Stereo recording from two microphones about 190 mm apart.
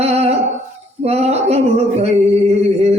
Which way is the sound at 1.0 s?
35° right (ahead or behind).